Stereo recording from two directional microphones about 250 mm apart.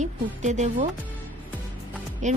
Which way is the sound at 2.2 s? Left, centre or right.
Right.